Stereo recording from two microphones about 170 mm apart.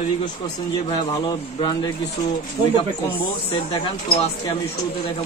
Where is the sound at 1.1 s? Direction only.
25° left (ahead or behind).